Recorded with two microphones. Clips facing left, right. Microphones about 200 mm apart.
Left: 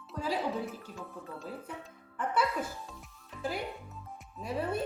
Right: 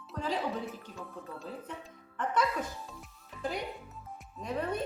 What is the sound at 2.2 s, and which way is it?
Music, 10° left (ahead or behind).